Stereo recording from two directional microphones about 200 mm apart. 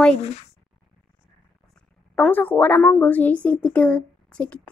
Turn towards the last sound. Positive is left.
turn(degrees=5)  # may be behind; listen again after turning